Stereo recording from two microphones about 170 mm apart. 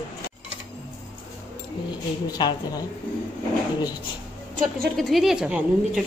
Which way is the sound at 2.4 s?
25° left (ahead or behind).